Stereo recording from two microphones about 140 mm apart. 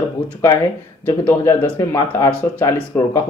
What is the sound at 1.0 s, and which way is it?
Speech, 15° left (ahead or behind).